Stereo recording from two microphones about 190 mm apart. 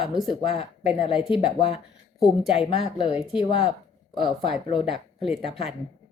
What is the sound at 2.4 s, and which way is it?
Speech, 30° left (ahead or behind).